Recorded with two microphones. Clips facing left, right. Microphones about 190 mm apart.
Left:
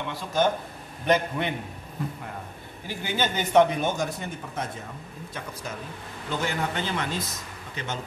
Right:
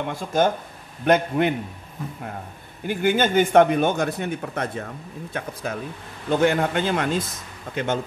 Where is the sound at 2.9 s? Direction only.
55° right (ahead or behind).